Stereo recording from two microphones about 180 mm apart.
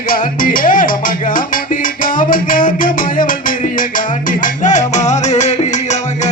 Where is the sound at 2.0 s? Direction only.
50° left (ahead or behind).